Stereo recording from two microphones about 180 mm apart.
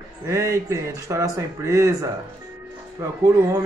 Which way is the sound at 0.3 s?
15° right (ahead or behind).